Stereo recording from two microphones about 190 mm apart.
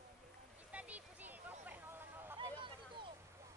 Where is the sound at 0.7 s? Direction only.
5° right (ahead or behind).